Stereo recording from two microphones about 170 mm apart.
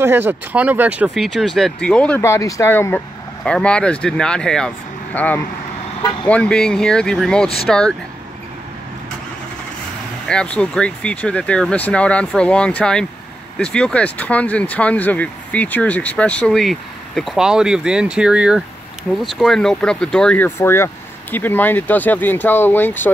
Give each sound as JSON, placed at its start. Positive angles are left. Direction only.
{"t": 0.0, "sound": "speech", "side_deg": -10}
{"t": 10.2, "sound": "speech", "side_deg": 5}